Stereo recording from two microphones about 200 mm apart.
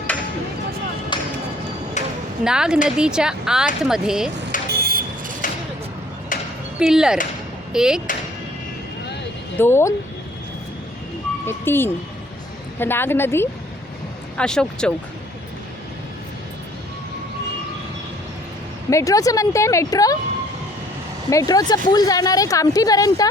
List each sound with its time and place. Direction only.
1.1 s music: 25° left (ahead or behind)
2.0 s a sound: 35° left (ahead or behind)
2.4 s a woman's voice: 5° right (ahead or behind)
4.8 s vehicle: 45° right (ahead or behind)
6.3 s a sound: 40° left (ahead or behind)
6.7 s a woman's voice: 5° right (ahead or behind)
9.6 s a woman's voice: 10° left (ahead or behind)
11.4 s a woman's voice: 10° left (ahead or behind)
18.9 s a woman's voice: 15° left (ahead or behind)
21.2 s a woman's voice: 15° left (ahead or behind)